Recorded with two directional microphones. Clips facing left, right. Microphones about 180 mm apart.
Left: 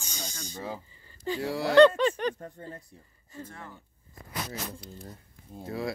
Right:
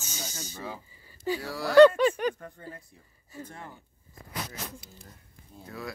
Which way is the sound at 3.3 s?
15° right (ahead or behind).